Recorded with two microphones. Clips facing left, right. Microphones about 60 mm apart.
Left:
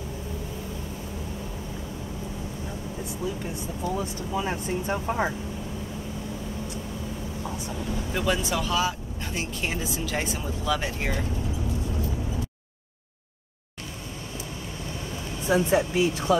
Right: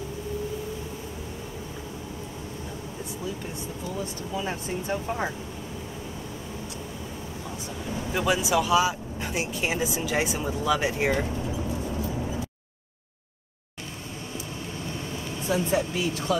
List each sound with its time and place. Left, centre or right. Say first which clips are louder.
4.4 s speech: left 3 dB; left
8.1 s speech: right 3 dB; centre
15.5 s speech: left 4 dB; left